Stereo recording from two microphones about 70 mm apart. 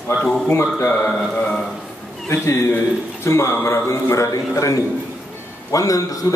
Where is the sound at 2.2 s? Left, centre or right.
Left.